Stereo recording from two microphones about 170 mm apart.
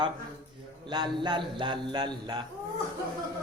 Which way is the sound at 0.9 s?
25° right (ahead or behind).